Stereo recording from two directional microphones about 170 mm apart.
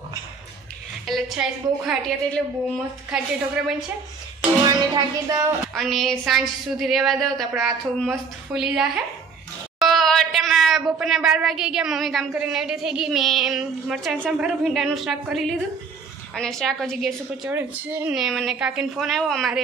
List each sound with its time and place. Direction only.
1.0 s a woman's voice: centre (ahead or behind)
4.6 s speech: 20° right (ahead or behind)
5.8 s a woman's voice: centre (ahead or behind)
17.6 s a woman's voice: 10° right (ahead or behind)